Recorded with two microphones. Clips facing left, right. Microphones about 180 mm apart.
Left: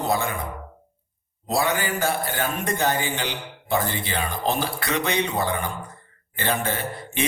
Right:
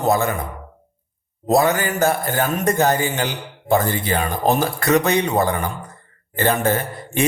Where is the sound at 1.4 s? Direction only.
45° right (ahead or behind).